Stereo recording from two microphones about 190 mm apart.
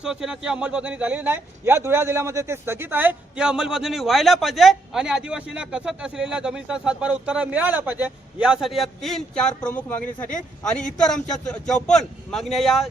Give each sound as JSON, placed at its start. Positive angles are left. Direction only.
{"t": 0.0, "sound": "speech", "side_deg": -5}
{"t": 11.0, "sound": "speech", "side_deg": 5}